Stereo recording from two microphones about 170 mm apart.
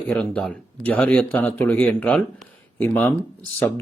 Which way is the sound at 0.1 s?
5° left (ahead or behind).